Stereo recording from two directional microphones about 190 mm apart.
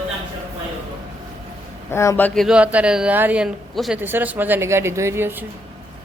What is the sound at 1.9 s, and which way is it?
Speech, 15° left (ahead or behind).